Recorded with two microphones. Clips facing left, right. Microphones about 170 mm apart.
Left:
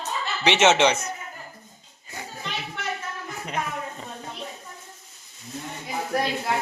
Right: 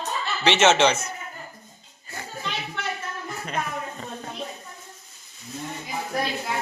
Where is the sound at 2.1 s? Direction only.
15° left (ahead or behind).